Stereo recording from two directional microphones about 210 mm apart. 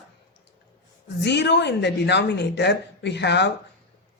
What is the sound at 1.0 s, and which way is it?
A woman's voice, 55° left (ahead or behind).